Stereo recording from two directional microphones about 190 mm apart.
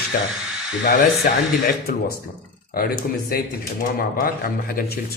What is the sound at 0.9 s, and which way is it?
Speech, 50° left (ahead or behind).